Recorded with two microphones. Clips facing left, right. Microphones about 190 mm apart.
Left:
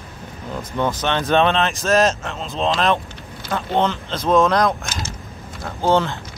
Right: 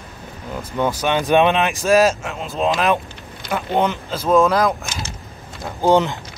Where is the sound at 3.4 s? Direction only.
15° right (ahead or behind).